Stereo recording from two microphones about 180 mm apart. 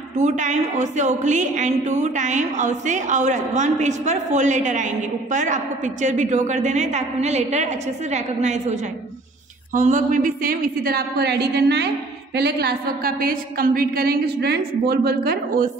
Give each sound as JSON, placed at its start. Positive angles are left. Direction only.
{"t": 0.2, "sound": "a woman's voice", "side_deg": -40}
{"t": 9.8, "sound": "a woman's voice", "side_deg": -45}